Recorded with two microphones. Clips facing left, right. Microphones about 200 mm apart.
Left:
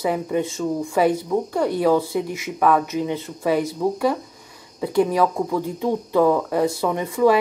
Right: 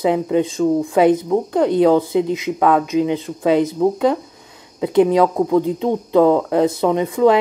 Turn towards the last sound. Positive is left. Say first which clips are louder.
# right 4 dB
turn(degrees=-20)  # may be behind; listen again after turning